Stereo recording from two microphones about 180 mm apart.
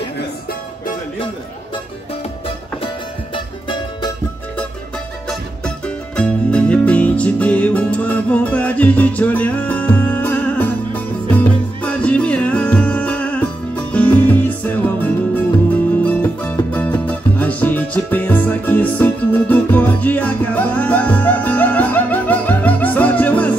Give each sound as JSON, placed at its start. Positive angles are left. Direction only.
{"t": 3.3, "sound": "music", "side_deg": 25}
{"t": 5.9, "sound": "music", "side_deg": 5}